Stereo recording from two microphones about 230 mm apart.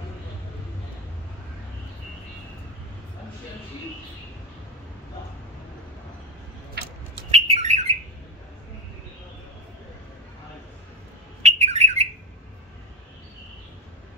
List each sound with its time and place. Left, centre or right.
6.8 s a sound: right
7.2 s bird: right
11.4 s bird: right